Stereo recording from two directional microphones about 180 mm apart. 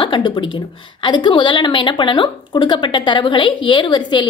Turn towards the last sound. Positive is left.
turn(degrees=25)  # may be behind; listen again after turning